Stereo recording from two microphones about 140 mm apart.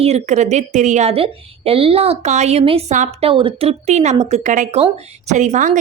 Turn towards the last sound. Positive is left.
turn(degrees=-65)  # may be behind; listen again after turning